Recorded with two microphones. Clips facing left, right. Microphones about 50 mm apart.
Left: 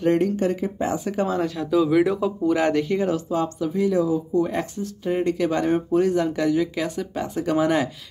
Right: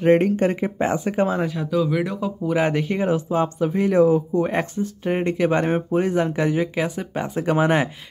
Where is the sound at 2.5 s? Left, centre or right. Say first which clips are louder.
Even; centre.